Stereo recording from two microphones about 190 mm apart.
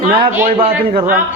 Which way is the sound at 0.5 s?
30° right (ahead or behind).